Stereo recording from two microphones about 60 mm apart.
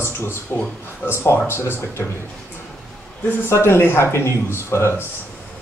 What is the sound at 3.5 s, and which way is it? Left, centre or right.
Speech, left.